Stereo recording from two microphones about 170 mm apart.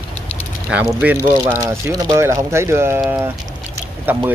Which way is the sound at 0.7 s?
5° right (ahead or behind).